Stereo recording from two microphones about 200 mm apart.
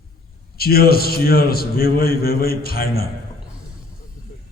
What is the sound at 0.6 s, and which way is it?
A man's voice, 50° left (ahead or behind).